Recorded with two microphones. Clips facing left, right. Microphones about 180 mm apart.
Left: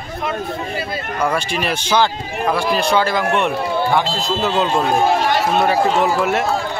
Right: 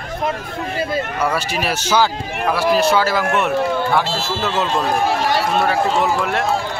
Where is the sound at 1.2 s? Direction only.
5° right (ahead or behind).